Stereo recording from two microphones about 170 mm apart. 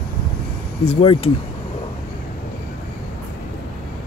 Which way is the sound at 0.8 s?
35° left (ahead or behind).